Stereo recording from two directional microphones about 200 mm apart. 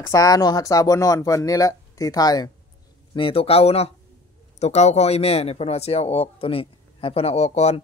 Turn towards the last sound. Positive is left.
turn(degrees=30)  # may be behind; listen again after turning